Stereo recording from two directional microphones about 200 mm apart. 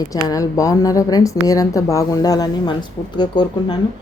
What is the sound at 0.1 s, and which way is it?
A woman's voice, 15° left (ahead or behind).